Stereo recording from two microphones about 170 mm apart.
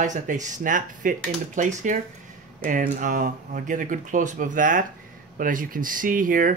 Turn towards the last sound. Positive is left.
turn(degrees=-55)  # may be behind; listen again after turning